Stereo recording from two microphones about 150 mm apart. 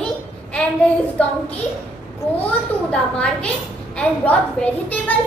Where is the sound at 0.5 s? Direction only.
5° left (ahead or behind).